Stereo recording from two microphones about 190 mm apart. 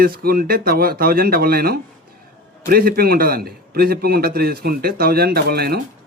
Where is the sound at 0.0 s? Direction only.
50° right (ahead or behind).